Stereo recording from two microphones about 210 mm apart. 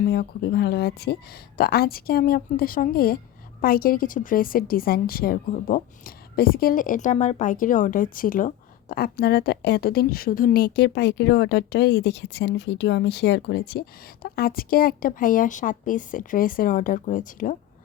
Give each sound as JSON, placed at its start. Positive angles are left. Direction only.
{"t": 0.0, "sound": "a woman's voice", "side_deg": 50}